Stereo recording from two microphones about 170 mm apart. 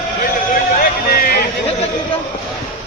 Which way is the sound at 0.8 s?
60° left (ahead or behind).